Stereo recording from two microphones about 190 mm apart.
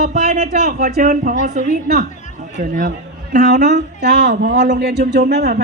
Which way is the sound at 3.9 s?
65° right (ahead or behind).